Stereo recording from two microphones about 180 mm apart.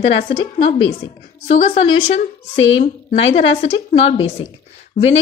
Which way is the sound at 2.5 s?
90° left.